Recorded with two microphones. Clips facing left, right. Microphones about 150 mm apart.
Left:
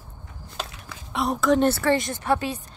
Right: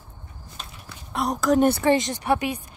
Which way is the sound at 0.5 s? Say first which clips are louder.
Left 7 dB; 90° left.